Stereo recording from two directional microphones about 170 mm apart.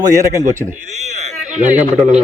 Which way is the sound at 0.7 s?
40° right (ahead or behind).